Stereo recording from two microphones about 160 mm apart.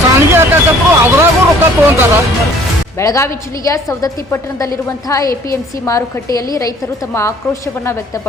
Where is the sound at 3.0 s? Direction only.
20° left (ahead or behind).